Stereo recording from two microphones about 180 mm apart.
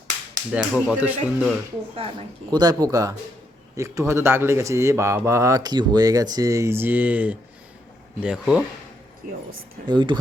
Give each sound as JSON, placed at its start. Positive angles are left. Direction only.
{"t": 0.5, "sound": "speech", "side_deg": -5}
{"t": 2.5, "sound": "speech", "side_deg": -20}
{"t": 9.2, "sound": "a woman's voice", "side_deg": -50}
{"t": 9.8, "sound": "speech", "side_deg": -25}